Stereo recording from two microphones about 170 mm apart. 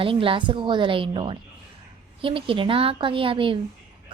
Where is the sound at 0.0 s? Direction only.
30° right (ahead or behind).